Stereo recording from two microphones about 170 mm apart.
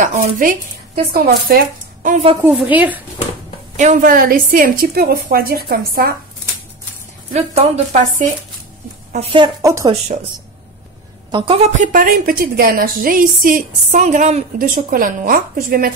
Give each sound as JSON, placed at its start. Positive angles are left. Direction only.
{"t": 0.0, "sound": "speech", "side_deg": -45}
{"t": 1.1, "sound": "a woman's voice", "side_deg": -65}
{"t": 2.0, "sound": "speech", "side_deg": -40}
{"t": 2.4, "sound": "a woman's voice", "side_deg": -10}
{"t": 3.7, "sound": "a woman's voice", "side_deg": -45}
{"t": 7.3, "sound": "speech", "side_deg": -35}
{"t": 9.6, "sound": "a woman's voice", "side_deg": -20}
{"t": 11.3, "sound": "a woman's voice", "side_deg": -35}